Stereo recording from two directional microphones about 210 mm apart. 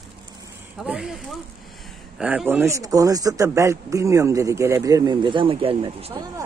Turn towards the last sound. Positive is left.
turn(degrees=-25)  # may be behind; listen again after turning